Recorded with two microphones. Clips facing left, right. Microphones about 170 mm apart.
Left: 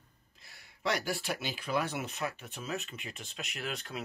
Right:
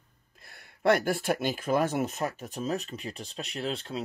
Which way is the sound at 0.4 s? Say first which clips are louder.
Right 7 dB; 55° right (ahead or behind).